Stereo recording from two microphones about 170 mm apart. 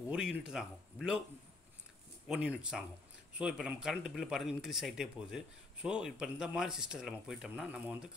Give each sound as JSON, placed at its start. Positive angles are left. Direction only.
{"t": 0.1, "sound": "a man's voice", "side_deg": -5}
{"t": 2.2, "sound": "a man's voice", "side_deg": -5}